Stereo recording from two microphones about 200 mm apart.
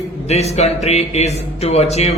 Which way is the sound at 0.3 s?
35° left (ahead or behind).